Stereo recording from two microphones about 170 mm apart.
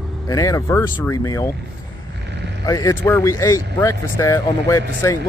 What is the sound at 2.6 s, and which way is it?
Speech, 20° left (ahead or behind).